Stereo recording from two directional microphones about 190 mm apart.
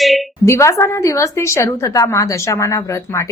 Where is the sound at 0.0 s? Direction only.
Centre (ahead or behind).